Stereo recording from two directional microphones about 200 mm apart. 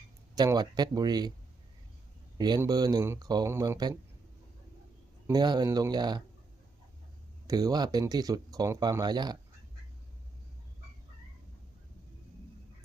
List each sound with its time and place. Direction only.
0.3 s speech: 20° right (ahead or behind)
2.4 s speech: 20° right (ahead or behind)
5.2 s speech: 20° right (ahead or behind)
7.4 s speech: 20° right (ahead or behind)